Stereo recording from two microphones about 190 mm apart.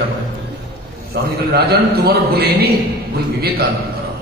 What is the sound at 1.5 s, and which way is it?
A man's voice, 55° right (ahead or behind).